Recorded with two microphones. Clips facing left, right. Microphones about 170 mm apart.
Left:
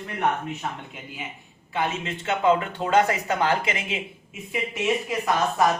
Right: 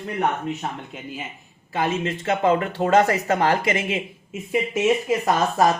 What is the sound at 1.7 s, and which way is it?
Speech, 40° right (ahead or behind).